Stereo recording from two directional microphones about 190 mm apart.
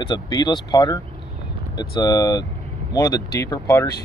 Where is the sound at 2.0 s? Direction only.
20° left (ahead or behind).